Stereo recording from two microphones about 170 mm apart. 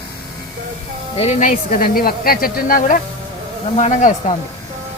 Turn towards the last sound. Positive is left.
turn(degrees=45)  # may be behind; listen again after turning